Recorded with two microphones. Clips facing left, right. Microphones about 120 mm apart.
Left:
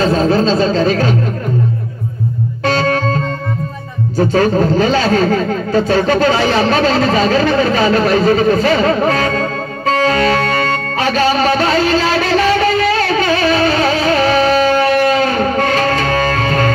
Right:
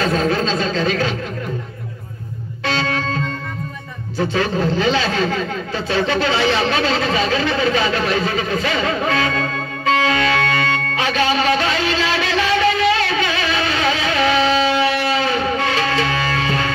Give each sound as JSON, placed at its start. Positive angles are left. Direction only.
{"t": 0.0, "sound": "speech", "side_deg": 35}
{"t": 2.6, "sound": "music", "side_deg": 45}
{"t": 4.2, "sound": "a sound", "side_deg": 45}